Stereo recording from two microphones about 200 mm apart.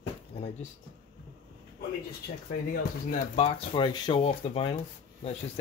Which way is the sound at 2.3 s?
55° left (ahead or behind).